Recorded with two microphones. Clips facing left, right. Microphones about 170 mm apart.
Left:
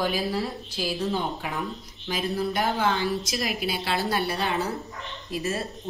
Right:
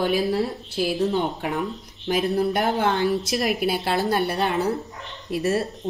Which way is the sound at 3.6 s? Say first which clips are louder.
Right 5 dB; 55° right (ahead or behind).